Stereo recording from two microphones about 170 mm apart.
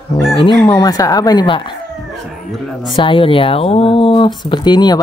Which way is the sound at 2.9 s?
30° left (ahead or behind).